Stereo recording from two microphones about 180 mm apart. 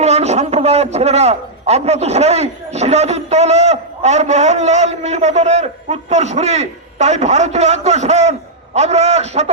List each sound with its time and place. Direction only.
0.0 s a man's voice: 35° right (ahead or behind)